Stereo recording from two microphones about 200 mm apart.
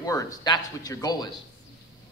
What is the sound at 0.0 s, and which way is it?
Speech, 15° left (ahead or behind).